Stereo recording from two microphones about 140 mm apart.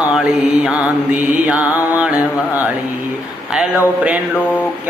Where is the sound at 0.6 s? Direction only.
10° right (ahead or behind).